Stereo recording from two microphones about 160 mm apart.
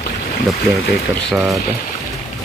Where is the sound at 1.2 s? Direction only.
Centre (ahead or behind).